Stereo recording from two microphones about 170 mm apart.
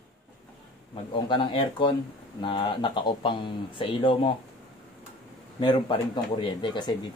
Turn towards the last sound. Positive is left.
turn(degrees=25)  # may be behind; listen again after turning